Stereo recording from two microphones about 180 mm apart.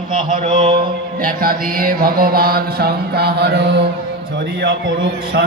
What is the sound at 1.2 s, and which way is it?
Music, 55° right (ahead or behind).